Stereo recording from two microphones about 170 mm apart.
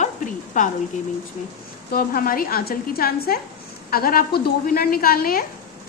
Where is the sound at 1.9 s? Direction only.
60° left (ahead or behind).